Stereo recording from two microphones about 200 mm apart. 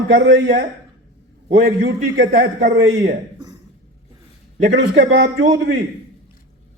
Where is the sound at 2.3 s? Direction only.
40° right (ahead or behind).